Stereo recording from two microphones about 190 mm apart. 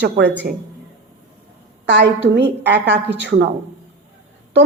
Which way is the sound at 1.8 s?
65° right (ahead or behind).